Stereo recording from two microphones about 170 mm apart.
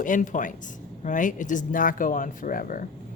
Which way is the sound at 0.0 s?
50° left (ahead or behind).